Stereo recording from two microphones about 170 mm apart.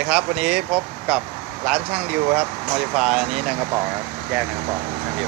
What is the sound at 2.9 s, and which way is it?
Speech, centre (ahead or behind).